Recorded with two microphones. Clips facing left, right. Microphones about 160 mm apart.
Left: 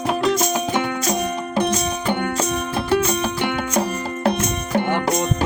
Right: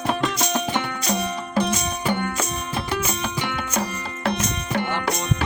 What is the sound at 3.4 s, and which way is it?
Music, 55° left (ahead or behind).